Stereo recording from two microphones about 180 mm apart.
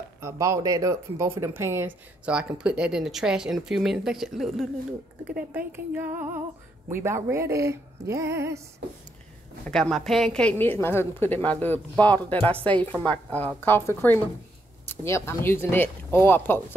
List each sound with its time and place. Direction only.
0.2 s speech: 15° right (ahead or behind)
9.7 s a woman's voice: 5° left (ahead or behind)